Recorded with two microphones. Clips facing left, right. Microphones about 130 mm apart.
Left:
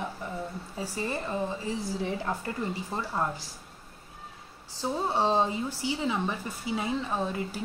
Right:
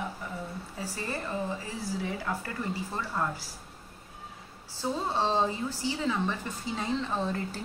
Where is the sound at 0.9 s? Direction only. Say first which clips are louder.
Left 3 dB; 20° left (ahead or behind).